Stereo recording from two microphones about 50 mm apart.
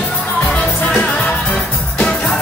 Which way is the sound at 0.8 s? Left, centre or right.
Left.